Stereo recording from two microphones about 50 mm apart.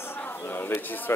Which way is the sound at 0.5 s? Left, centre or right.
Left.